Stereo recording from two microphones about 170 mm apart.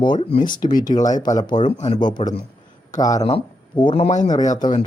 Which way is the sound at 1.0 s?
45° left (ahead or behind).